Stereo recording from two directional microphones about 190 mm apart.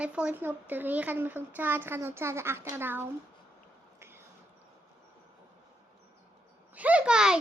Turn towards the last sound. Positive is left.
turn(degrees=-5)  # may be behind; listen again after turning